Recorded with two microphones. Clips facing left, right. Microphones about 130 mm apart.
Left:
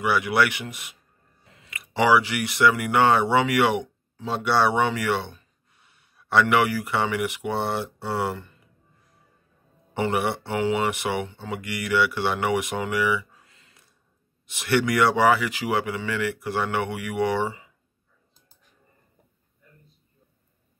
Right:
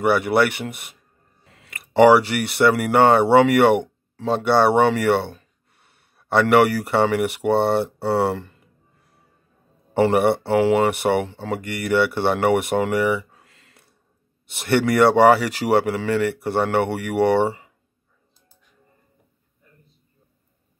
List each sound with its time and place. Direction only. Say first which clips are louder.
0.0 s speech: right 4 dB; 55° right (ahead or behind)
8.1 s speech: right 7 dB; 30° right (ahead or behind)
9.9 s speech: right 8 dB; 55° right (ahead or behind)
15.2 s speech: right 6 dB; 35° right (ahead or behind)
15.8 s speech: right 6 dB; 55° right (ahead or behind)